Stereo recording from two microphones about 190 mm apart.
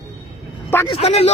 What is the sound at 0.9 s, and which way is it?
Speech, 35° left (ahead or behind).